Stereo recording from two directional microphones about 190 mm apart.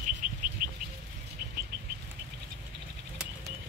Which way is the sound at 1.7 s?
60° right (ahead or behind).